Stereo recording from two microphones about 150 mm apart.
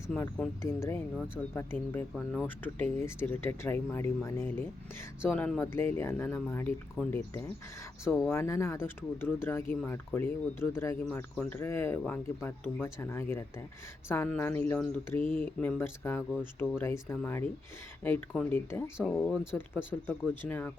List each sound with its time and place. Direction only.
0.1 s speech: 5° left (ahead or behind)